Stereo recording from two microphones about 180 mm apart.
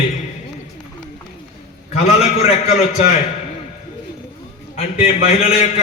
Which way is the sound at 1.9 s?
35° left (ahead or behind).